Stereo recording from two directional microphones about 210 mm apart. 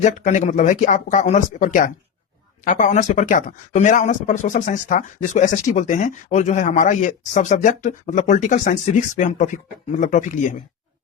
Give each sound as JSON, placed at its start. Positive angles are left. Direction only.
{"t": 0.0, "sound": "speech", "side_deg": 35}